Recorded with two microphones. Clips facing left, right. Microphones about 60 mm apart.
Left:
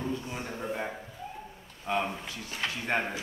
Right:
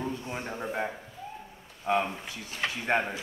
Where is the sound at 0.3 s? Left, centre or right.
Centre.